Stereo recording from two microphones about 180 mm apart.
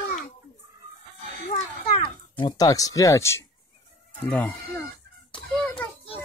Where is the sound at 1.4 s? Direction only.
30° left (ahead or behind).